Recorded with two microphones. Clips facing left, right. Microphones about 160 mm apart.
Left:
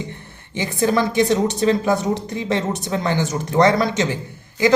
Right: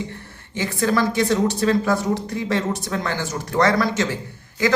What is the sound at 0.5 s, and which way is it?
Speech, 20° left (ahead or behind).